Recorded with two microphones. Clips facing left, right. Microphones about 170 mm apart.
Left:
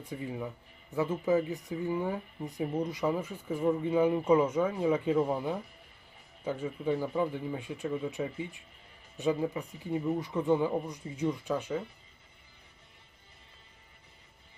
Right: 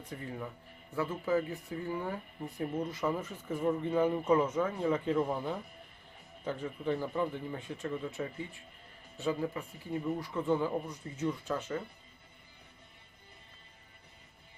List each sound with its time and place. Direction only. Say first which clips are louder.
0.0 s speech: left 4 dB; 10° left (ahead or behind)